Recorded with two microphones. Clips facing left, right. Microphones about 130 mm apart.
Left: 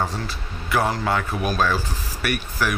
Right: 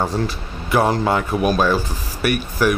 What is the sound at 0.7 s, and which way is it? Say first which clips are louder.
Speech: right 5 dB; 20° right (ahead or behind).